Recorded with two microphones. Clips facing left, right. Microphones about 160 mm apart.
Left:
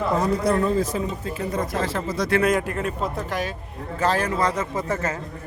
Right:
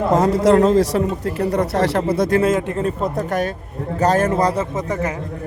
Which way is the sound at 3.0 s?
45° right (ahead or behind).